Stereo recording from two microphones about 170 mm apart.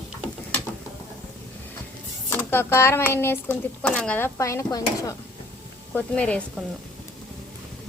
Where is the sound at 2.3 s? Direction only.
15° left (ahead or behind).